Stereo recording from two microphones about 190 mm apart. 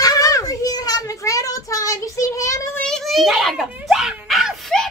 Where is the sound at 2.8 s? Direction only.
Centre (ahead or behind).